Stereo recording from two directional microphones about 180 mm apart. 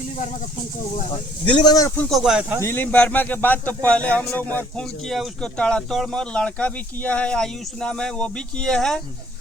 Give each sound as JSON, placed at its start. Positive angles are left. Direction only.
{"t": 1.1, "sound": "speech", "side_deg": 25}
{"t": 2.0, "sound": "speech", "side_deg": 0}
{"t": 2.6, "sound": "speech", "side_deg": 10}